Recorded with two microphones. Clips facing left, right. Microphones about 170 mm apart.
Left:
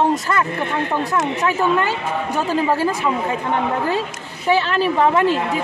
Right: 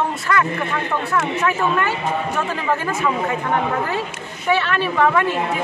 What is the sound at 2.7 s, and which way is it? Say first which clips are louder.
Speech: left 2 dB; 30° left (ahead or behind).